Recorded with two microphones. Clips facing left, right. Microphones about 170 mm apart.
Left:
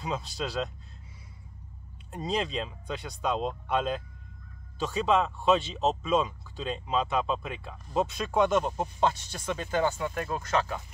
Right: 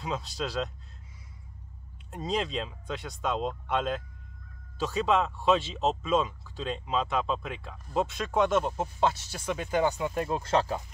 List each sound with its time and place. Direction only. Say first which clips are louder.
0.0 s speech: even; centre (ahead or behind)
2.0 s speech: even; centre (ahead or behind); by 10.8 s 30° right (ahead or behind)